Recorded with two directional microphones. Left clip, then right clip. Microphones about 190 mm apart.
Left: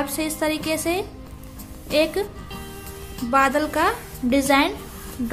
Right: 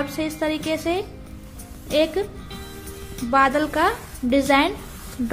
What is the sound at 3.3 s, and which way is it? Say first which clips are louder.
A woman's voice: right 1 dB; 5° right (ahead or behind).